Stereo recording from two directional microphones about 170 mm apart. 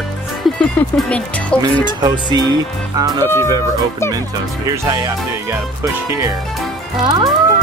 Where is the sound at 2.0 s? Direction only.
25° right (ahead or behind).